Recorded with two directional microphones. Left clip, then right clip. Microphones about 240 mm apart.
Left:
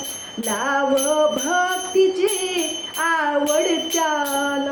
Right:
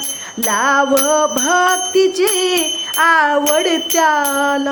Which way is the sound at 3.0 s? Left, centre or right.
Right.